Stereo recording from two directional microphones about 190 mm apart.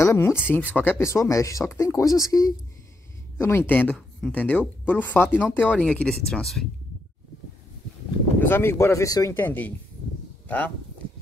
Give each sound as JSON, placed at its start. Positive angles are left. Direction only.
{"t": 0.0, "sound": "speech", "side_deg": 15}
{"t": 8.4, "sound": "speech", "side_deg": 10}